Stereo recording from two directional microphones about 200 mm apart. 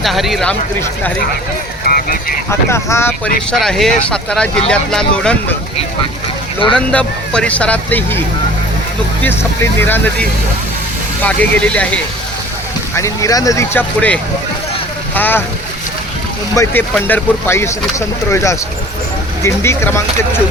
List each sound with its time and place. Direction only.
0.0 s speech: centre (ahead or behind)
1.9 s speech: 45° left (ahead or behind)
2.5 s speech: 15° left (ahead or behind)
3.5 s speech: centre (ahead or behind)
6.7 s speech: 5° left (ahead or behind)
9.2 s speech: 10° left (ahead or behind)
13.0 s speech: 15° left (ahead or behind)
16.6 s speech: 15° left (ahead or behind)